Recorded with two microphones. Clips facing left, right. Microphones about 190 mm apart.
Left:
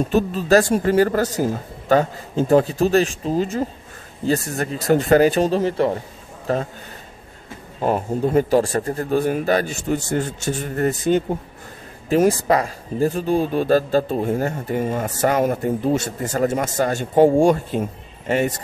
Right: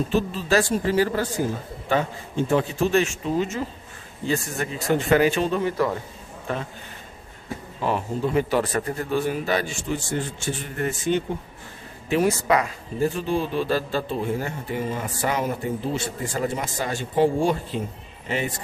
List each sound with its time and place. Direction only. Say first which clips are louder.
0.1 s a man's voice: left 7 dB; 45° left (ahead or behind)
7.8 s speech: left 5 dB; 45° left (ahead or behind)